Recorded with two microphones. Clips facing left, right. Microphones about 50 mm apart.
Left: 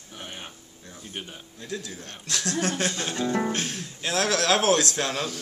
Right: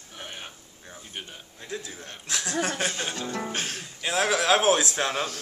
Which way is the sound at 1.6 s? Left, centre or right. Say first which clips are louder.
Left 1 dB; right.